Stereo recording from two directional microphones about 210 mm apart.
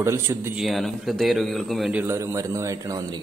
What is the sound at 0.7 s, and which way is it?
A man's voice, centre (ahead or behind).